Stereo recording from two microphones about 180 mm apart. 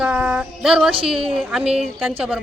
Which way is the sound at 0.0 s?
5° right (ahead or behind).